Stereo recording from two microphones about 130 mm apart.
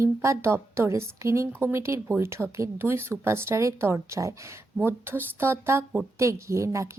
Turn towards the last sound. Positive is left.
turn(degrees=-25)  # may be behind; listen again after turning